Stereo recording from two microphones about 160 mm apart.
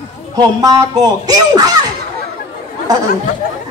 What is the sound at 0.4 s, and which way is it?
A woman's voice, 25° right (ahead or behind).